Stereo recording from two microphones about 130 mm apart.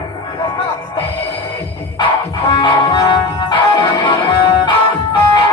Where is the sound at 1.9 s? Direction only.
40° left (ahead or behind).